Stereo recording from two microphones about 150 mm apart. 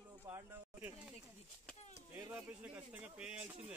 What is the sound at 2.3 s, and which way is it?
Speech, 10° right (ahead or behind).